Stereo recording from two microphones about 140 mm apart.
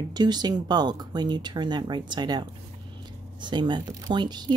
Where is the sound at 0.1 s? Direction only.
30° right (ahead or behind).